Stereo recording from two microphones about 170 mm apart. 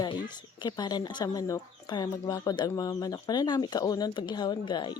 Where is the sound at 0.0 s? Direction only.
25° left (ahead or behind).